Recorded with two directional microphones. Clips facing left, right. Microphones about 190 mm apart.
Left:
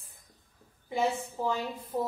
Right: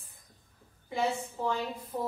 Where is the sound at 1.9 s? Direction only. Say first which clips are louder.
Left 3 dB; 20° left (ahead or behind).